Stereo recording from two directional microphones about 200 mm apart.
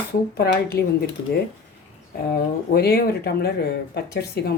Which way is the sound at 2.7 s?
50° left (ahead or behind).